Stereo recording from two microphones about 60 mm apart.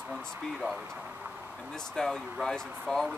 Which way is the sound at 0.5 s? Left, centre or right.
Centre.